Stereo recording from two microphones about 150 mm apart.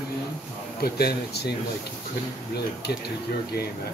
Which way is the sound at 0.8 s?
90° left.